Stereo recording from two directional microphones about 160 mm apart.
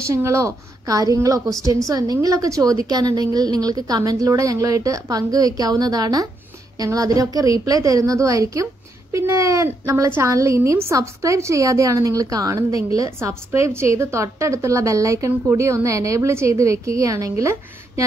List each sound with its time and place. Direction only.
0.0 s a woman's voice: 20° right (ahead or behind)